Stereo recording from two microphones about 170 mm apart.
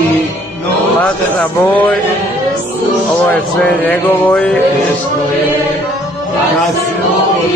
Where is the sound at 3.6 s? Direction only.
10° left (ahead or behind).